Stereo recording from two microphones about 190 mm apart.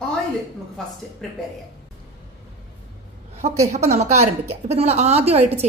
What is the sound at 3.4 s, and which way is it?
A woman's voice, 35° right (ahead or behind).